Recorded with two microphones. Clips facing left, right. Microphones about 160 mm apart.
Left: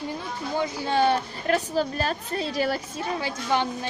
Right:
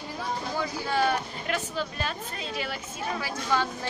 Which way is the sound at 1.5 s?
40° left (ahead or behind).